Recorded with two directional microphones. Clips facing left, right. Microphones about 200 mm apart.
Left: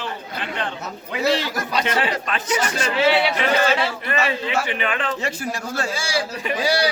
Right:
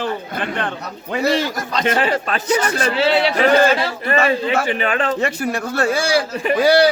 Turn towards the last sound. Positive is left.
turn(degrees=-55)  # may be behind; listen again after turning